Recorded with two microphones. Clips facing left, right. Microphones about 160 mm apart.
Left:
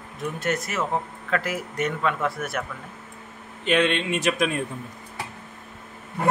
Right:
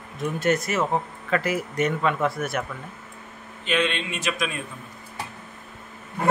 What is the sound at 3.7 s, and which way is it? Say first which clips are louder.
Speech: left 4 dB; 60° left (ahead or behind).